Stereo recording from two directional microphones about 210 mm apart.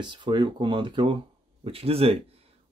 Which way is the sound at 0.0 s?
20° right (ahead or behind).